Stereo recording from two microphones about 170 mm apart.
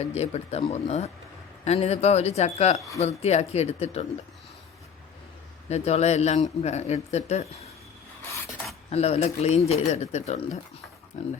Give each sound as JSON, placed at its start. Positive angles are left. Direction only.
{"t": 0.0, "sound": "speech", "side_deg": 40}
{"t": 5.6, "sound": "speech", "side_deg": 40}
{"t": 8.9, "sound": "speech", "side_deg": 40}